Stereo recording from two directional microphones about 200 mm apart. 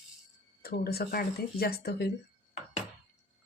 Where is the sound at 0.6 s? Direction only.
50° left (ahead or behind).